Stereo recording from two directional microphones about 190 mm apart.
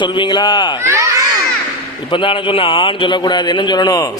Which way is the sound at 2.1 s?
25° left (ahead or behind).